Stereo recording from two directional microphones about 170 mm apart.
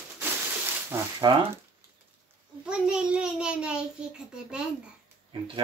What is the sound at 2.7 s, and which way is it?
A child's voice, 5° right (ahead or behind).